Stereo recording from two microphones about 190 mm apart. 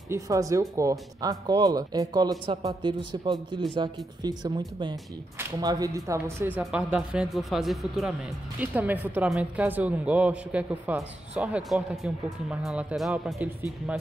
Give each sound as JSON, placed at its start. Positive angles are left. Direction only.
{"t": 0.1, "sound": "speech", "side_deg": -15}